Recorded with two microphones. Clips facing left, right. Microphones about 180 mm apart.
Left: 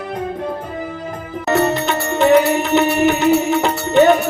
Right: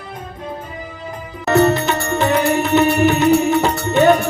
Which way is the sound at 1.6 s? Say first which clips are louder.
Right 2 dB; 20° left (ahead or behind).